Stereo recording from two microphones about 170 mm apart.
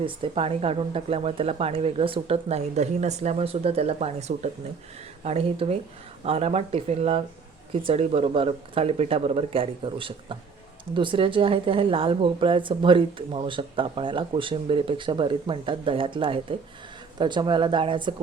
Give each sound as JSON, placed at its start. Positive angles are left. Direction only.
{"t": 0.0, "sound": "a woman's voice", "side_deg": -35}